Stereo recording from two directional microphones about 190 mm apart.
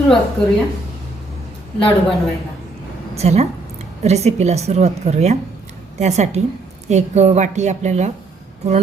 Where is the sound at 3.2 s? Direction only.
35° right (ahead or behind).